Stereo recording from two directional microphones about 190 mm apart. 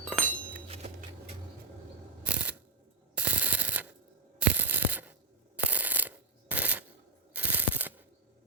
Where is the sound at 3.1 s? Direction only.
5° right (ahead or behind).